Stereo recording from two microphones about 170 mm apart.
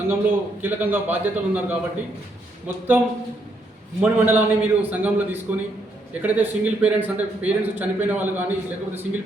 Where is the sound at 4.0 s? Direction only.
10° right (ahead or behind).